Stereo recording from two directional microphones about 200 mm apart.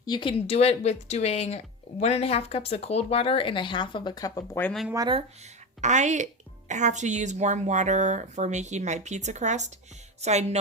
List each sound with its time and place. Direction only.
0.0 s speech: 25° left (ahead or behind); by 4.9 s 5° left (ahead or behind)
5.8 s speech: 35° right (ahead or behind)